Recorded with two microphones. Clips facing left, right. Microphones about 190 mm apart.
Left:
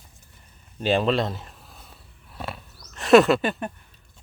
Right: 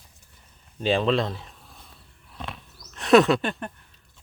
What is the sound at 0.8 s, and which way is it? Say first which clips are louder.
Speech: left 1 dB; centre (ahead or behind).